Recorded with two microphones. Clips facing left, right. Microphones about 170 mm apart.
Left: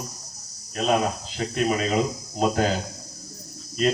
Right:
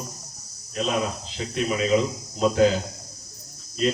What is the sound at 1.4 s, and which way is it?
A man's voice, 50° left (ahead or behind).